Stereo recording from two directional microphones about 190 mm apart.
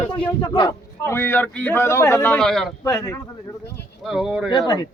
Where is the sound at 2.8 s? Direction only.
15° left (ahead or behind).